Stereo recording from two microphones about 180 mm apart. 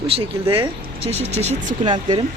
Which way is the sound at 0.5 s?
30° right (ahead or behind).